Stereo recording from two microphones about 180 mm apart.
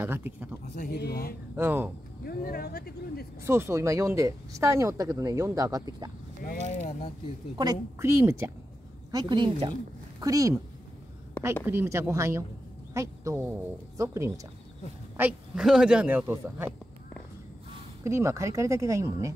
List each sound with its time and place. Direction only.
0.0 s speech: 10° right (ahead or behind)
0.7 s speech: 60° left (ahead or behind)
1.6 s speech: 10° right (ahead or behind)
2.2 s speech: 55° left (ahead or behind)
3.4 s speech: 15° right (ahead or behind)
6.6 s speech: 35° left (ahead or behind)
7.5 s a woman's voice: 20° right (ahead or behind)
11.6 s speech: 15° right (ahead or behind)
18.0 s speech: 15° right (ahead or behind)